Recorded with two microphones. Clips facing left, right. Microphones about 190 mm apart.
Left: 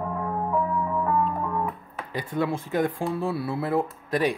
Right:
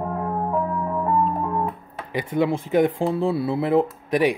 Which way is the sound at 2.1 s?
20° right (ahead or behind).